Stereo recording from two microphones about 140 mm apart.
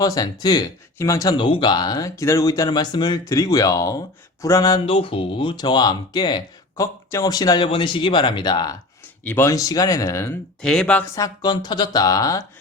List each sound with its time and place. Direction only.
0.0 s speech: 25° left (ahead or behind)
9.2 s speech: 15° left (ahead or behind)
10.6 s speech: 5° left (ahead or behind)
11.1 s speech: 25° left (ahead or behind)